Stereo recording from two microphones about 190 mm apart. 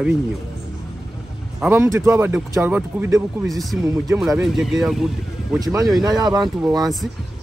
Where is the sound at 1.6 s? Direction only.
10° right (ahead or behind).